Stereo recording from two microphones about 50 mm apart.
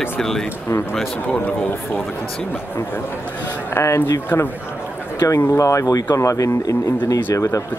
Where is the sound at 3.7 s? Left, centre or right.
Left.